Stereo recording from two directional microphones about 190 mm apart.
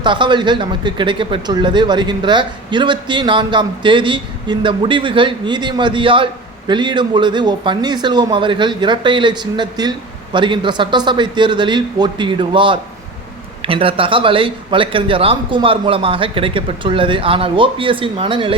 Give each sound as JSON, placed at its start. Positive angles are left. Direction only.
{"t": 0.0, "sound": "speech", "side_deg": -25}